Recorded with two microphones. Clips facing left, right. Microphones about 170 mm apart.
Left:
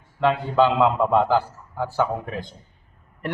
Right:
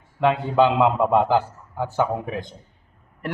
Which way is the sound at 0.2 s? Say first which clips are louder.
Right 1 dB; 15° right (ahead or behind).